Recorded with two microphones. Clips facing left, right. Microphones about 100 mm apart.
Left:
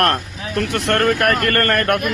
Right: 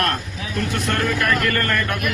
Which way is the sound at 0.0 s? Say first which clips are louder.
Left 5 dB; 75° left (ahead or behind).